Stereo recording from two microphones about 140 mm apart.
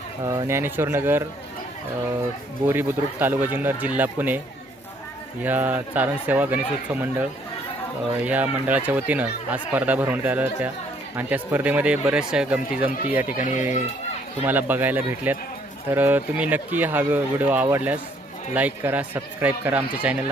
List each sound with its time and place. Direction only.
0.3 s speech: 20° right (ahead or behind)
2.6 s speech: 15° right (ahead or behind)
5.4 s speech: 10° right (ahead or behind)
13.3 s speech: 70° left (ahead or behind)
14.4 s speech: 15° right (ahead or behind)